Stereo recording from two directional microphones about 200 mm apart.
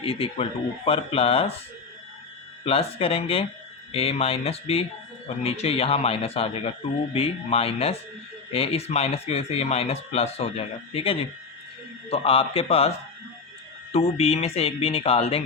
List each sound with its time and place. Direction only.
0.0 s a man's voice: 30° left (ahead or behind)
2.6 s a man's voice: 30° left (ahead or behind)
13.9 s speech: 30° left (ahead or behind)